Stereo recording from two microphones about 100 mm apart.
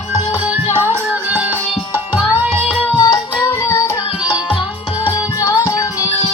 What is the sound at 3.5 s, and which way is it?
Music, 30° left (ahead or behind).